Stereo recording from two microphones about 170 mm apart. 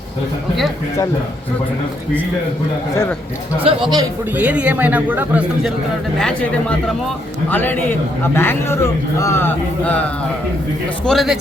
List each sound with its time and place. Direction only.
3.6 s speech: 30° right (ahead or behind)
4.4 s a man's voice: 10° right (ahead or behind)
6.1 s a man's voice: 5° left (ahead or behind)
11.0 s speech: centre (ahead or behind)